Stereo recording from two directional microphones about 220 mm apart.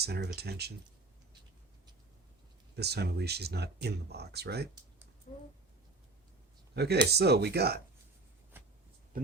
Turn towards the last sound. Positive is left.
turn(degrees=-45)  # may be behind; listen again after turning